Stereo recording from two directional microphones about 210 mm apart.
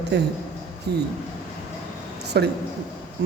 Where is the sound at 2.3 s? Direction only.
50° right (ahead or behind).